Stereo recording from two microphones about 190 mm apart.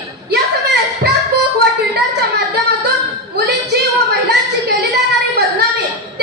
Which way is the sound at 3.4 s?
60° right (ahead or behind).